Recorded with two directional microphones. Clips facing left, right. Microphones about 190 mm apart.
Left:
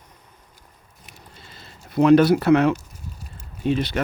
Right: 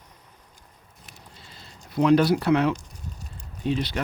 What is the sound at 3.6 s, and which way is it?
Speech, 60° left (ahead or behind).